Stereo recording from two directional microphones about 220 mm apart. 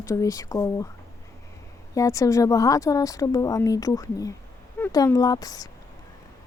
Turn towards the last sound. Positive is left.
turn(degrees=15)  # may be behind; listen again after turning